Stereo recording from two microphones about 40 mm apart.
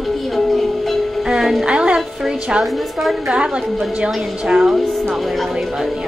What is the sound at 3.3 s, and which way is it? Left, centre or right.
Speech, right.